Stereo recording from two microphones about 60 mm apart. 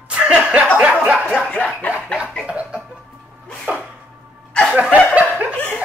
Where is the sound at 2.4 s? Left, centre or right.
Centre.